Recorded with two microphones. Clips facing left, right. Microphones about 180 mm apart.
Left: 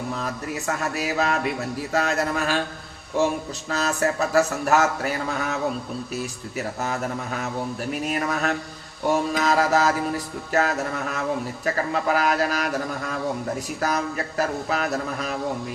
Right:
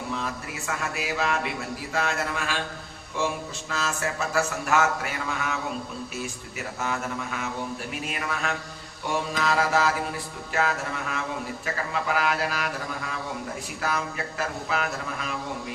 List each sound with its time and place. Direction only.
0.2 s a sound: 40° left (ahead or behind)
1.9 s speech: 40° left (ahead or behind)
6.7 s speech: 40° left (ahead or behind)
9.0 s mantra: 40° left (ahead or behind)
10.5 s speech: 40° left (ahead or behind)